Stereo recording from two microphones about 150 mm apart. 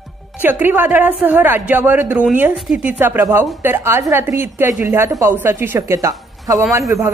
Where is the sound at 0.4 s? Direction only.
10° right (ahead or behind).